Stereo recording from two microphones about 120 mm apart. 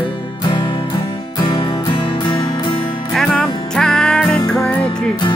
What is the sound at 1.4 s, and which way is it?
Music, 40° left (ahead or behind).